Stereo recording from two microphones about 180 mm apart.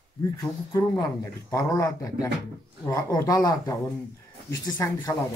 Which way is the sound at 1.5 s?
20° left (ahead or behind).